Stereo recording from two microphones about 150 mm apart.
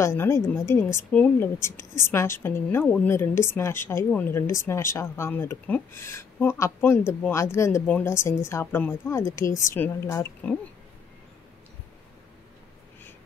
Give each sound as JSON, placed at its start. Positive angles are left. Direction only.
{"t": 0.0, "sound": "a woman's voice", "side_deg": 20}